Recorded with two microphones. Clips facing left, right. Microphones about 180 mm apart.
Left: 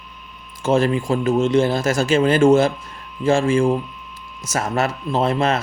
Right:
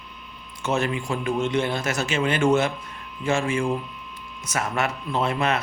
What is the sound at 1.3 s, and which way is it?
Speech, 30° left (ahead or behind).